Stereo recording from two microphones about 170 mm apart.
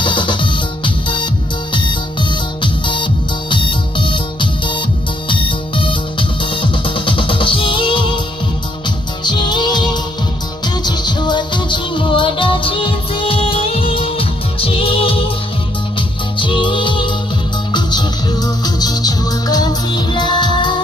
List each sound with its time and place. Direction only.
0.0 s music: 30° left (ahead or behind)
9.2 s music: 25° left (ahead or behind)